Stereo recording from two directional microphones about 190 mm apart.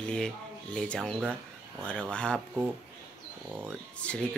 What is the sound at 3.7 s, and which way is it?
Speech, 5° left (ahead or behind).